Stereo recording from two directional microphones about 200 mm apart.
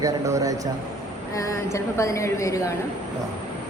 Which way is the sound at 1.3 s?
15° left (ahead or behind).